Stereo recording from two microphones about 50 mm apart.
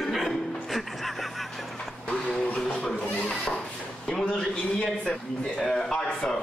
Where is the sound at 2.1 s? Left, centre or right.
Centre.